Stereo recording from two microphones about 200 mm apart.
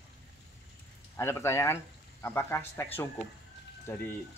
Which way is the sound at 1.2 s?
10° left (ahead or behind).